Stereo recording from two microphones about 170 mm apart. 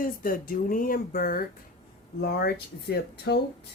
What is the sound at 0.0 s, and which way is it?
Speech, 55° left (ahead or behind).